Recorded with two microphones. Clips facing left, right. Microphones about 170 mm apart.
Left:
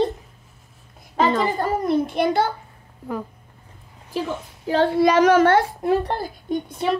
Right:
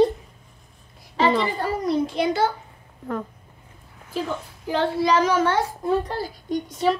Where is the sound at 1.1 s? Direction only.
50° left (ahead or behind).